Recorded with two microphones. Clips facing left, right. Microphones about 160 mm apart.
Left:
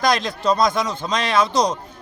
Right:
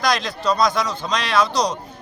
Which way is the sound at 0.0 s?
50° left (ahead or behind).